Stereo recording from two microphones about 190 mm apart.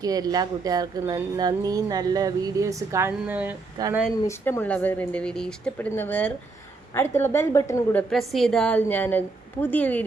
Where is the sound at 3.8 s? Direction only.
20° right (ahead or behind).